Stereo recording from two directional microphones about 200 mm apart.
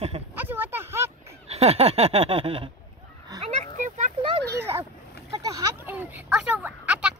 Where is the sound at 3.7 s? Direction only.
35° right (ahead or behind).